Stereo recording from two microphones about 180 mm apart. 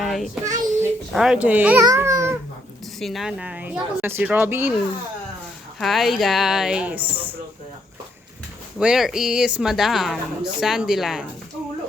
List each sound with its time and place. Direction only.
0.0 s child singing: centre (ahead or behind)
0.4 s a sound: 45° right (ahead or behind)
1.1 s speech: 5° right (ahead or behind)
1.8 s babbling: 20° right (ahead or behind)
3.0 s speech: centre (ahead or behind)
5.8 s speech: centre (ahead or behind)
8.8 s speech: 5° right (ahead or behind)